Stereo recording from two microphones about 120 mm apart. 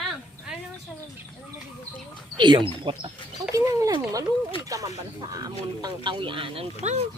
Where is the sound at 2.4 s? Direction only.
40° right (ahead or behind).